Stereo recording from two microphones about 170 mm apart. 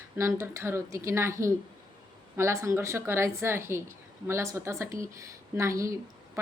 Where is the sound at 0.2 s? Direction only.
15° right (ahead or behind).